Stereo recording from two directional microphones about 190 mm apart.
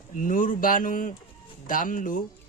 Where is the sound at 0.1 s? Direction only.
40° left (ahead or behind).